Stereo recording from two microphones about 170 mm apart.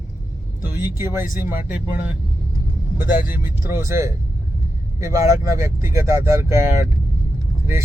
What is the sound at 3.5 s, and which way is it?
Speech, 15° right (ahead or behind).